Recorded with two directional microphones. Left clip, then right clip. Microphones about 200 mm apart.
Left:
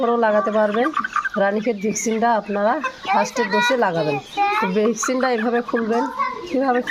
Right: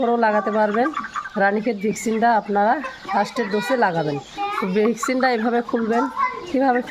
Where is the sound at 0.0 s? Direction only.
25° right (ahead or behind).